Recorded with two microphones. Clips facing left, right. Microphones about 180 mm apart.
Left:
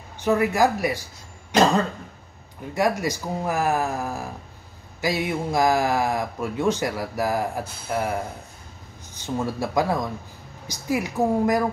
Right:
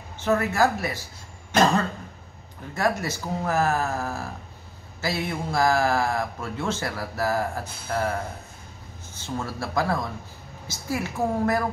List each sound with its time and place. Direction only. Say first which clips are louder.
0.2 s speech: left 2 dB; 15° left (ahead or behind)
2.7 s speech: left 3 dB; 15° left (ahead or behind)